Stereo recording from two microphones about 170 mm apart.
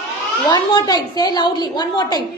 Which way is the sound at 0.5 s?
25° left (ahead or behind).